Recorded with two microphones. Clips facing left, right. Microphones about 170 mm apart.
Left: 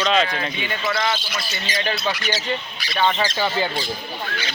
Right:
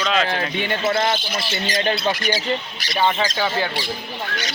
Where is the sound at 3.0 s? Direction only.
10° right (ahead or behind).